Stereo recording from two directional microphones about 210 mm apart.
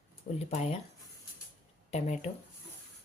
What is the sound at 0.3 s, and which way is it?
Speech, 30° left (ahead or behind).